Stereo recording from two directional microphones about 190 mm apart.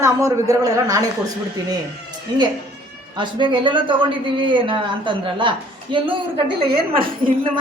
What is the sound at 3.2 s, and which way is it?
Speech, 25° right (ahead or behind).